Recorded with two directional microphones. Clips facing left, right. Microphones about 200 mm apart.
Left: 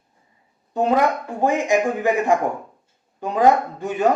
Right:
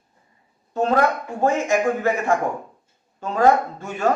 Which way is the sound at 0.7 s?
15° left (ahead or behind).